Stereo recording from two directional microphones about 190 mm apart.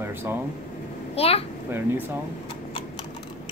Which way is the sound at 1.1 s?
30° left (ahead or behind).